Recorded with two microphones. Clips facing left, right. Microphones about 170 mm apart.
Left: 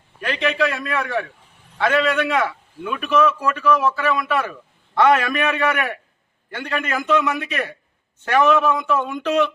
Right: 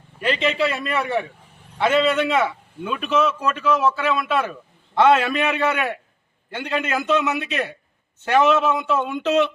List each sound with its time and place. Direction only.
0.3 s a man's voice: 15° right (ahead or behind)